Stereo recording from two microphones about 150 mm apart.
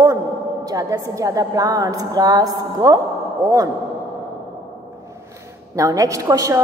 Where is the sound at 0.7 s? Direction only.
25° right (ahead or behind).